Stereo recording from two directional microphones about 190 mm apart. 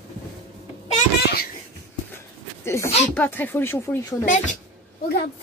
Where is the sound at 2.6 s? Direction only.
15° left (ahead or behind).